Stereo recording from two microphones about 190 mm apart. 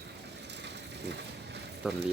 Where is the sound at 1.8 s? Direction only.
5° right (ahead or behind).